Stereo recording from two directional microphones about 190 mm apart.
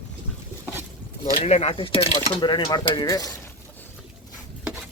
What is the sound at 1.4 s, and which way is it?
Speech, 35° left (ahead or behind).